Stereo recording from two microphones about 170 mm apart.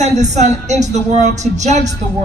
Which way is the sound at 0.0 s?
45° right (ahead or behind).